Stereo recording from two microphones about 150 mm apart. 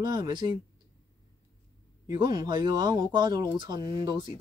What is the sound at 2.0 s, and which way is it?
Speech, 30° right (ahead or behind).